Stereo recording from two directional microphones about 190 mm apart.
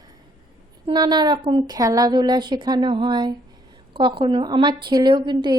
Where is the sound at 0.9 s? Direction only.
20° right (ahead or behind).